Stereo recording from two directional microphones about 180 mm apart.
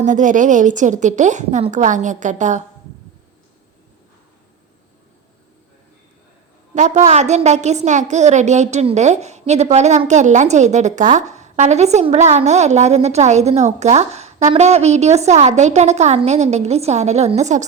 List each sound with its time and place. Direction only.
0.0 s a woman's voice: 45° right (ahead or behind)
6.7 s a woman's voice: 40° right (ahead or behind)